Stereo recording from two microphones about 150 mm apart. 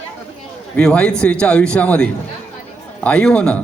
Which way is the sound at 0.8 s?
5° left (ahead or behind).